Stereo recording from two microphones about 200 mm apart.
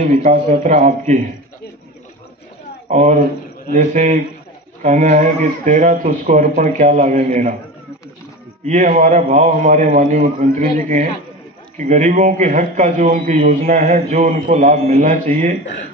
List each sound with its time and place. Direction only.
0.1 s a man's voice: 40° right (ahead or behind)
2.9 s a man's voice: 35° right (ahead or behind)
8.6 s a man's voice: 35° right (ahead or behind)
14.7 s a man's voice: 40° right (ahead or behind)